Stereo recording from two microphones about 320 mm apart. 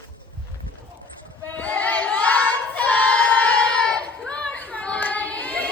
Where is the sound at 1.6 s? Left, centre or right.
Centre.